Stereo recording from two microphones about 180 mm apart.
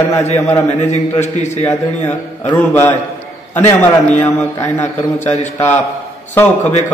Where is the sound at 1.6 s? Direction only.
10° left (ahead or behind).